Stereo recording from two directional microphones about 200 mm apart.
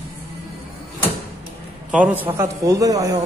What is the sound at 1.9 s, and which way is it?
A man's voice, 5° right (ahead or behind).